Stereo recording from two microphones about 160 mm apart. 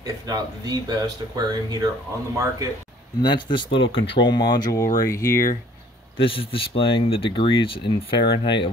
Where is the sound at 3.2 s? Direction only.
30° left (ahead or behind).